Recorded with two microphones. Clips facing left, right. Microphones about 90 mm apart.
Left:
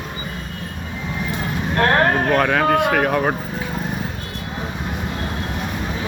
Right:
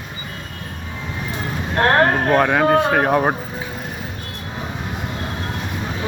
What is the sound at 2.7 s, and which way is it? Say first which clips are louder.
Speech: right 2 dB; 25° right (ahead or behind).